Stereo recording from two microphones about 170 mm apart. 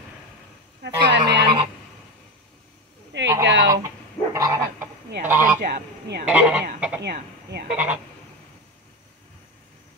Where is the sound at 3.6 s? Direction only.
20° right (ahead or behind).